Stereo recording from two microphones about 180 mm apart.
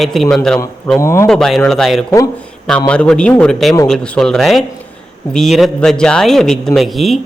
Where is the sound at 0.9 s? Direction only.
15° left (ahead or behind).